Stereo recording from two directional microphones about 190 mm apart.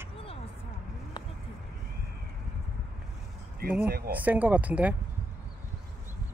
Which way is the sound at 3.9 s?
50° right (ahead or behind).